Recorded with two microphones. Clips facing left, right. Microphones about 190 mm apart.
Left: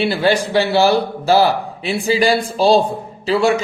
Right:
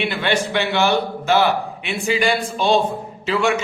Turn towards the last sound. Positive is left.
turn(degrees=35)  # may be behind; listen again after turning